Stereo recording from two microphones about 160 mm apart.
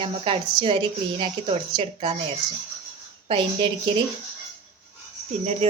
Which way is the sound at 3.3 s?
30° right (ahead or behind).